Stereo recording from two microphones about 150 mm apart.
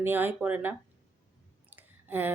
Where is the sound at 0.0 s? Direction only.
15° right (ahead or behind).